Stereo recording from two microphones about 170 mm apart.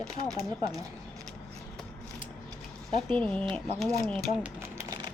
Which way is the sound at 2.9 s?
5° left (ahead or behind).